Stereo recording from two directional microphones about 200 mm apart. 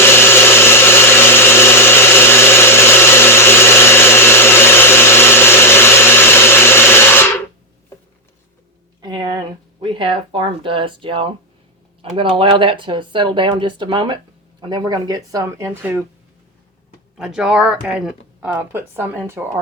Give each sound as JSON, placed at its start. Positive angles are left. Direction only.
{"t": 0.0, "sound": "blender", "side_deg": 10}
{"t": 9.0, "sound": "a sound", "side_deg": -20}
{"t": 9.8, "sound": "speech", "side_deg": -25}
{"t": 17.2, "sound": "speech", "side_deg": -5}